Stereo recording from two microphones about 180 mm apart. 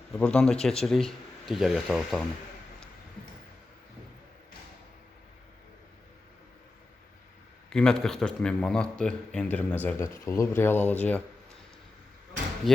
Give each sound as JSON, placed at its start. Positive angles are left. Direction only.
{"t": 0.2, "sound": "a man's voice", "side_deg": 5}
{"t": 7.7, "sound": "a man's voice", "side_deg": 5}
{"t": 12.6, "sound": "a man's voice", "side_deg": 0}